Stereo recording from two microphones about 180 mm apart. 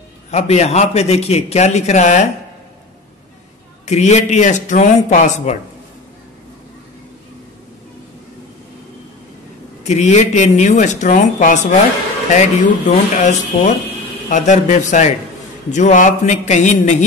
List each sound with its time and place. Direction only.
0.3 s a man's voice: 40° left (ahead or behind)
3.8 s a man's voice: 40° left (ahead or behind)
9.8 s a man's voice: 40° left (ahead or behind)